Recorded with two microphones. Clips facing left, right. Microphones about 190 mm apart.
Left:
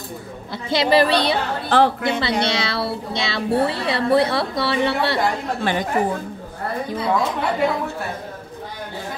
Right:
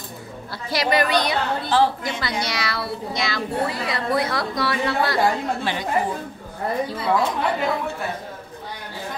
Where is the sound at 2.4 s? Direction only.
25° left (ahead or behind).